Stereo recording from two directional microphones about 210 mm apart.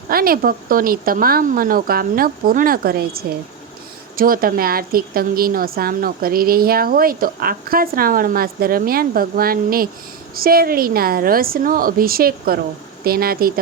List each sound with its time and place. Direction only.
0.1 s a woman's voice: 45° right (ahead or behind)